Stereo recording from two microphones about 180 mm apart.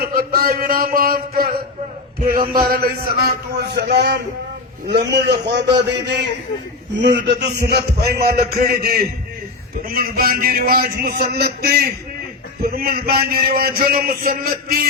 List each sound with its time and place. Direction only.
0.0 s a man's voice: 55° right (ahead or behind)
3.5 s a man's voice: 65° right (ahead or behind)